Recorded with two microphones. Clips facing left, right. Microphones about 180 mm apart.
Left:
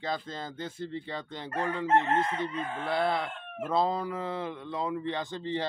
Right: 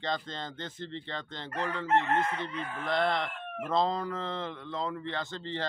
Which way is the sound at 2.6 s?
25° left (ahead or behind).